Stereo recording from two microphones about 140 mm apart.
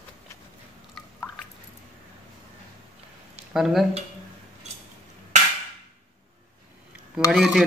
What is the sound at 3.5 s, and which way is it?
Speech, centre (ahead or behind).